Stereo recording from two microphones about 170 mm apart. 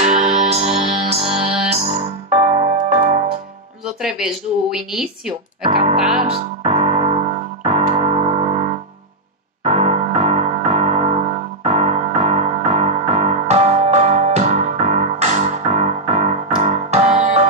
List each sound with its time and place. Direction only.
0.0 s music: 45° right (ahead or behind)
1.4 s music: 5° right (ahead or behind)
1.8 s music: 40° right (ahead or behind)
3.8 s speech: 5° right (ahead or behind)
5.7 s music: 35° right (ahead or behind)
5.9 s speech: 5° right (ahead or behind)
6.3 s piano: 40° right (ahead or behind)
9.7 s music: 40° right (ahead or behind)